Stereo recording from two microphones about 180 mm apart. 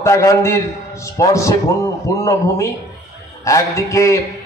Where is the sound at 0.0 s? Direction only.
15° left (ahead or behind).